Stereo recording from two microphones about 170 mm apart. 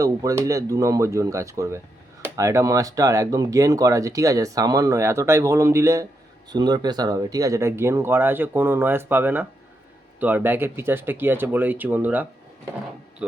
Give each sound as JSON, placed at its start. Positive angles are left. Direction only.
{"t": 0.0, "sound": "speech", "side_deg": -20}